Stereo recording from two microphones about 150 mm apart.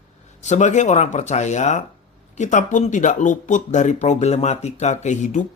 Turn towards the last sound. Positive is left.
turn(degrees=55)  # may be behind; listen again after turning